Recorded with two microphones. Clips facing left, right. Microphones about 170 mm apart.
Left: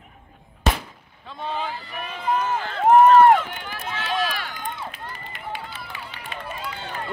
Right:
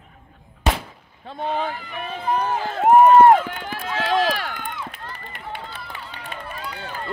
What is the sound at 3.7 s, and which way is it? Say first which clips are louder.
Run: right 6 dB; 90° right.